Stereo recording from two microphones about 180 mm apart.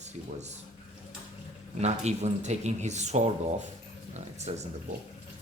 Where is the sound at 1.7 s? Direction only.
40° right (ahead or behind).